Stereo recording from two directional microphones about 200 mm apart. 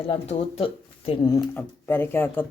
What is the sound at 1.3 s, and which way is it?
Speech, 10° left (ahead or behind).